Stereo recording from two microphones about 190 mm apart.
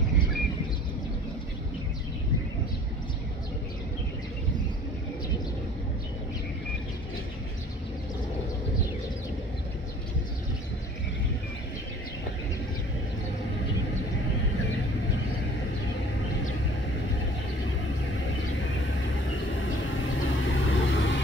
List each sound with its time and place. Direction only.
19.9 s vehicle: 90° left